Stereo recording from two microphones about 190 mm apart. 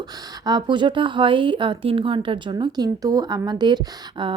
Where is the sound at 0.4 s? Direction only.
25° right (ahead or behind).